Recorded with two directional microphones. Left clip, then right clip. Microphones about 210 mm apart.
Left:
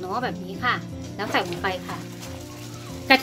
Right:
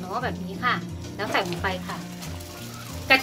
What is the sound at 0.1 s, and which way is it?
Speech, 35° left (ahead or behind).